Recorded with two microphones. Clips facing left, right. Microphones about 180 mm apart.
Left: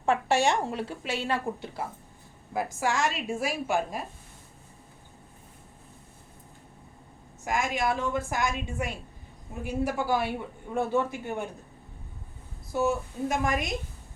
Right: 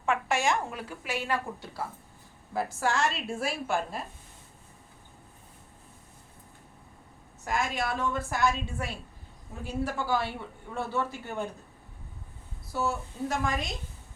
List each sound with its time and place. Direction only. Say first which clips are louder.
0.0 s a woman's voice: left 4 dB; 35° left (ahead or behind)
2.8 s a woman's voice: left 1 dB; 10° left (ahead or behind)
7.4 s a woman's voice: left 3 dB; 15° left (ahead or behind)
12.7 s a woman's voice: left 4 dB; 15° left (ahead or behind)